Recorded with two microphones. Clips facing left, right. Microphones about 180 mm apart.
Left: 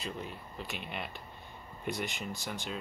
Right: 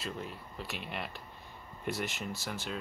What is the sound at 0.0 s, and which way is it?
Speech, centre (ahead or behind).